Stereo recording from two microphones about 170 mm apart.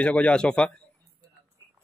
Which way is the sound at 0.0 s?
5° left (ahead or behind).